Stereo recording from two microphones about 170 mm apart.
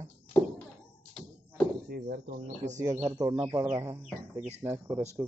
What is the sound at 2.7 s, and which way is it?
Speech, 20° right (ahead or behind).